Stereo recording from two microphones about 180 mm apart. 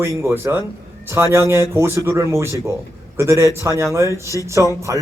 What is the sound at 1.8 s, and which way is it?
A man's voice, 15° right (ahead or behind).